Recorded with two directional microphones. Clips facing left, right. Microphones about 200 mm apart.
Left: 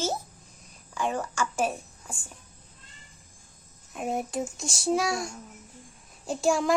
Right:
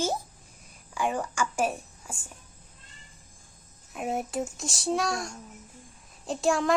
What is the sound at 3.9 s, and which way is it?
A child's voice, centre (ahead or behind).